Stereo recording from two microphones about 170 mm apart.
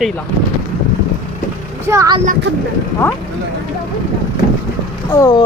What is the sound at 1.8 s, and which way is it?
Speech, 20° right (ahead or behind).